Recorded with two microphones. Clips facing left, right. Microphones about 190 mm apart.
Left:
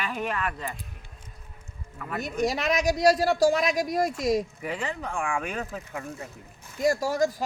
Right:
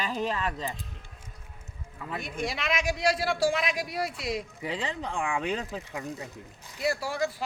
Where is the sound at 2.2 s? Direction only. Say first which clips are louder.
Left 7 dB; 45° left (ahead or behind).